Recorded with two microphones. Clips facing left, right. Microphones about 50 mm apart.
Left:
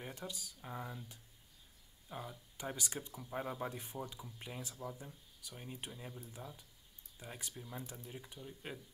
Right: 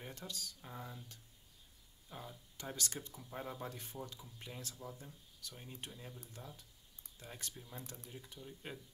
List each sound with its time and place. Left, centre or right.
0.0 s speech: centre